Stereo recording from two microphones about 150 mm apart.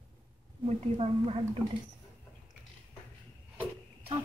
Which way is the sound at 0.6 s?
45° right (ahead or behind).